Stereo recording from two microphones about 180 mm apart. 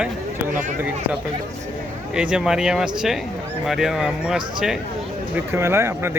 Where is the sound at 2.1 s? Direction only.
5° right (ahead or behind).